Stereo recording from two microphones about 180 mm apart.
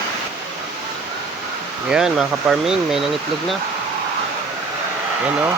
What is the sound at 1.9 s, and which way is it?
Speech, 5° right (ahead or behind).